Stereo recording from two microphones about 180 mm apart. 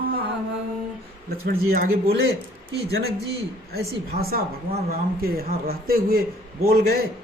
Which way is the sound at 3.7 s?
55° right (ahead or behind).